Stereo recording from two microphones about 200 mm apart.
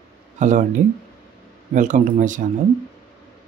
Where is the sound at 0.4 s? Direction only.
40° right (ahead or behind).